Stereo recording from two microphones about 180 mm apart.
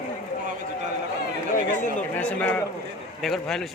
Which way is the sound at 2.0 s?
10° left (ahead or behind).